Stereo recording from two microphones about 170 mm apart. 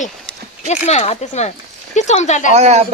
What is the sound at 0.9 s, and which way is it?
Speech, 40° left (ahead or behind).